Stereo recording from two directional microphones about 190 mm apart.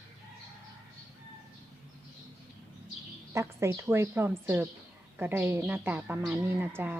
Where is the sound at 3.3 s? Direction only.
15° right (ahead or behind).